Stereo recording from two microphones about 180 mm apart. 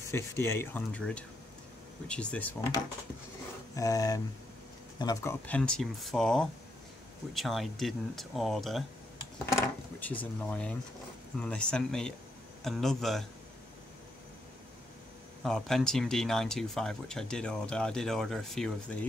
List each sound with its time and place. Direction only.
0.1 s dishes: 15° left (ahead or behind)
3.7 s speech: 20° left (ahead or behind)
4.9 s dishes: 20° left (ahead or behind)
5.6 s speech: 5° left (ahead or behind)
9.5 s dishes: 15° left (ahead or behind)
11.4 s speech: 5° left (ahead or behind)
15.4 s speech: centre (ahead or behind)